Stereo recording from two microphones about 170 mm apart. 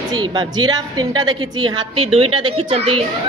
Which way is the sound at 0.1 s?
25° right (ahead or behind).